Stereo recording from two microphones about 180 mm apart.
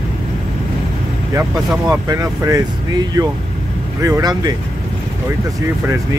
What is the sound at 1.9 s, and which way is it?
Speech, 20° right (ahead or behind).